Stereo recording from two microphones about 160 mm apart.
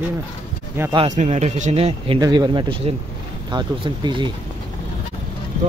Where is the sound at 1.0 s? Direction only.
45° right (ahead or behind).